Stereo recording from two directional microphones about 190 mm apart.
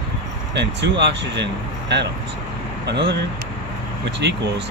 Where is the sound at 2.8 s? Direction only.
65° right (ahead or behind).